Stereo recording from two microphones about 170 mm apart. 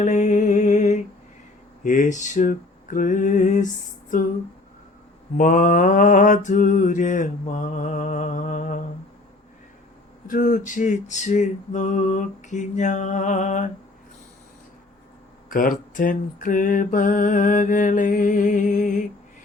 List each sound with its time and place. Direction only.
0.0 s music: 45° left (ahead or behind)
1.8 s mantra: 50° left (ahead or behind)
5.4 s mantra: 50° left (ahead or behind)
10.2 s mantra: 50° left (ahead or behind)
15.4 s mantra: 55° left (ahead or behind)